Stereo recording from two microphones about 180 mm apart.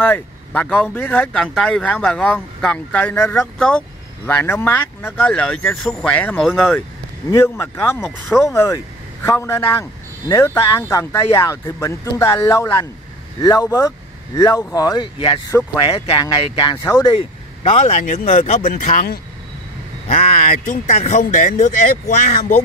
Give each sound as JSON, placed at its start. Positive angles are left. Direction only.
{"t": 0.0, "sound": "a man's voice", "side_deg": 10}
{"t": 8.0, "sound": "speech", "side_deg": 0}
{"t": 8.5, "sound": "a man's voice", "side_deg": 15}
{"t": 17.6, "sound": "speech", "side_deg": 35}
{"t": 20.1, "sound": "speech", "side_deg": 35}